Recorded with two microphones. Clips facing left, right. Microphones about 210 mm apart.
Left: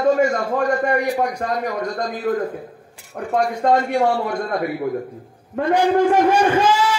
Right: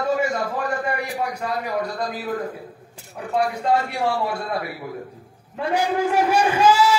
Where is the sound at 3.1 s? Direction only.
60° left (ahead or behind).